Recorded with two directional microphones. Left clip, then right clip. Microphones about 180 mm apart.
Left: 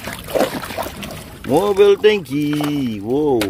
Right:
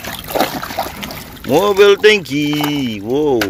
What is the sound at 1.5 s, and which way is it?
Speech, 5° left (ahead or behind).